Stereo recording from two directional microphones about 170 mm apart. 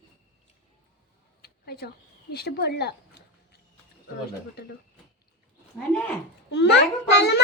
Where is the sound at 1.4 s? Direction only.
70° left (ahead or behind).